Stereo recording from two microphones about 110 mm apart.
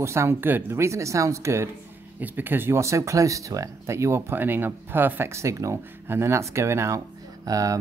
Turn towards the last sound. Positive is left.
turn(degrees=-30)  # may be behind; listen again after turning